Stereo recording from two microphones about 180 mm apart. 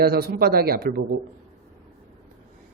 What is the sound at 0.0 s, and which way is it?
Speech, 60° right (ahead or behind).